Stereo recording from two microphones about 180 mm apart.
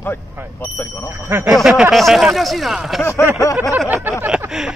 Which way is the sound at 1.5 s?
Centre (ahead or behind).